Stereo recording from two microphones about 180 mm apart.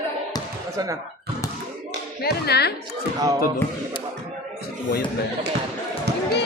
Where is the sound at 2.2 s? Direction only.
65° left (ahead or behind).